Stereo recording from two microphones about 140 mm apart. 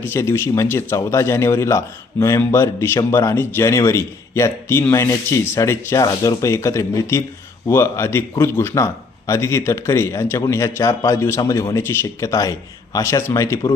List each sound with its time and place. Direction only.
0.0 s a man's voice: 20° left (ahead or behind)